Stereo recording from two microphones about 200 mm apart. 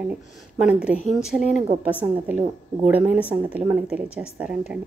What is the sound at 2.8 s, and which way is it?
A woman's voice, 10° right (ahead or behind).